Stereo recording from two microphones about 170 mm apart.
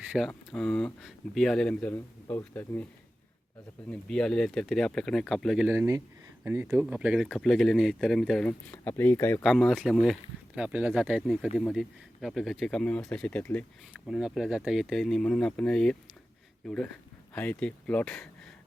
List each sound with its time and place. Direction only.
0.3 s speech: 5° left (ahead or behind)
3.8 s speech: 5° left (ahead or behind)
5.6 s speech: 15° right (ahead or behind); by 9.4 s 15° left (ahead or behind)
9.4 s speech: centre (ahead or behind)
14.1 s speech: centre (ahead or behind)